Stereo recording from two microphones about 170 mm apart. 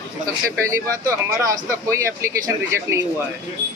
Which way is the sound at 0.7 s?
20° right (ahead or behind).